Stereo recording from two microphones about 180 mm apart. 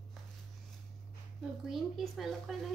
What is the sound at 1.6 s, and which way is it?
Speech, centre (ahead or behind).